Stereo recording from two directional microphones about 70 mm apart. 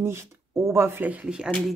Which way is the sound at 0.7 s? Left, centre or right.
Right.